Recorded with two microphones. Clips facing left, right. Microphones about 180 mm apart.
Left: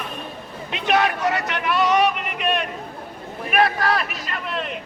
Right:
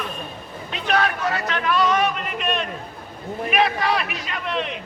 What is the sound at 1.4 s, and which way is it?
Speech, 15° left (ahead or behind).